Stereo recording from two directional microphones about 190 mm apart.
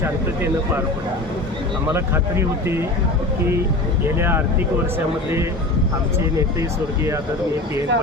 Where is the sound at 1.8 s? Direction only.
15° right (ahead or behind).